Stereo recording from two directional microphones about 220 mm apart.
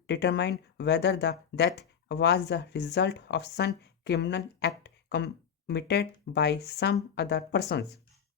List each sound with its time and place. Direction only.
0.1 s speech: 50° left (ahead or behind)